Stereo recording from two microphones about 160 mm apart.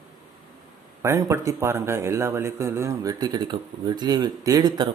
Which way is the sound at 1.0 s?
15° right (ahead or behind).